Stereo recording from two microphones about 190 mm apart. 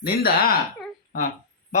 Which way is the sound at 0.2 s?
50° left (ahead or behind).